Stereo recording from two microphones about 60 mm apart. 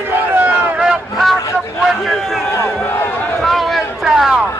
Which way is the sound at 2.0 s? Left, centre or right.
Centre.